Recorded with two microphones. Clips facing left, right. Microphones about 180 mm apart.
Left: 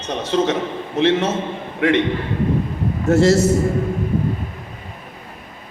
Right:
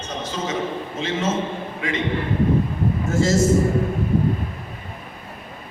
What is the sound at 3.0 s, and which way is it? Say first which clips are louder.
Speech: left 8 dB; 65° left (ahead or behind).